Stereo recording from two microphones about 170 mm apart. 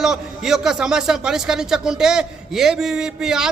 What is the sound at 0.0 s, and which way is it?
A man's voice, 5° right (ahead or behind).